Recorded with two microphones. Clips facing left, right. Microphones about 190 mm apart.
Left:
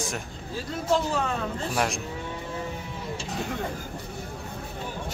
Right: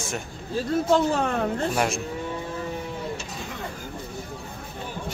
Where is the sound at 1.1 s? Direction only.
60° right (ahead or behind).